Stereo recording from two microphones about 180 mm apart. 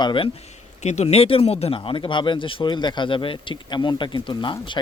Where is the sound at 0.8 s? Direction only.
40° left (ahead or behind).